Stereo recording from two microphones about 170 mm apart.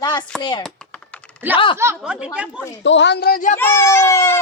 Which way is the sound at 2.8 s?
90° left.